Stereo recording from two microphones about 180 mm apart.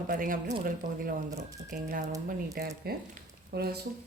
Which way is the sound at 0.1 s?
50° right (ahead or behind).